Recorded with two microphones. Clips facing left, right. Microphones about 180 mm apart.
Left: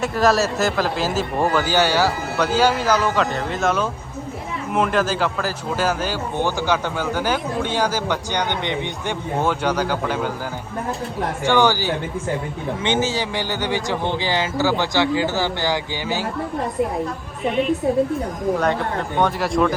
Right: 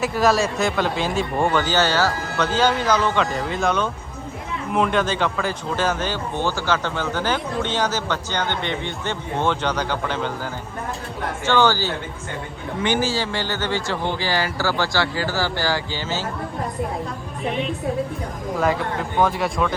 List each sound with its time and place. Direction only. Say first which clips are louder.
0.0 s speech: left 1 dB; centre (ahead or behind)
11.4 s speech: left 1 dB; 15° left (ahead or behind)
17.4 s speech: left 5 dB; centre (ahead or behind)